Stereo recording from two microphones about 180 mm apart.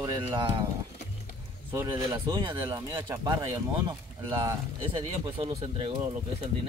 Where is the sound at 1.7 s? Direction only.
15° right (ahead or behind); by 6.0 s 30° right (ahead or behind).